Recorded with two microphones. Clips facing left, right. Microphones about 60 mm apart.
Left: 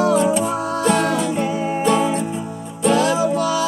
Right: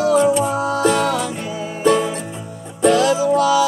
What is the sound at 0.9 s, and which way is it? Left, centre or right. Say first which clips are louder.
Music: left 1 dB; left.